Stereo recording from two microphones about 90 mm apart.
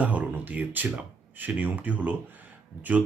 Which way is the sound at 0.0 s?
15° right (ahead or behind).